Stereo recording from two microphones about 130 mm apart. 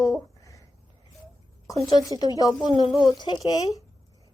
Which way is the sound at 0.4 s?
25° left (ahead or behind).